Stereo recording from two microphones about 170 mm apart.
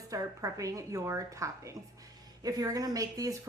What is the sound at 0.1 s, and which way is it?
Speech, 20° right (ahead or behind).